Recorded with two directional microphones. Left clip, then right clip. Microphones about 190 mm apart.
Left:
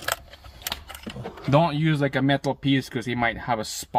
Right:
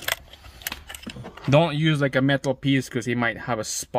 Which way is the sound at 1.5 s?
55° right (ahead or behind).